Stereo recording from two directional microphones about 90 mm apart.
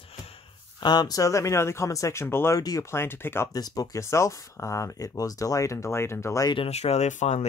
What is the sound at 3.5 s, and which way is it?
Speech, 45° left (ahead or behind).